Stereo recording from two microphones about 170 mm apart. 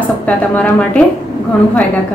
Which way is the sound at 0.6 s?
5° left (ahead or behind).